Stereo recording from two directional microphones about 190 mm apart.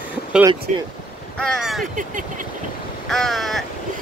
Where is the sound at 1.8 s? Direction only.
45° right (ahead or behind).